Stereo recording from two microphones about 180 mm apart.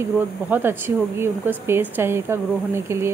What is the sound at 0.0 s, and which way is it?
Speech, 10° right (ahead or behind).